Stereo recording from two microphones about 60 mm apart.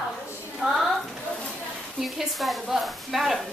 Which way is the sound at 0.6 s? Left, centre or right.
Centre.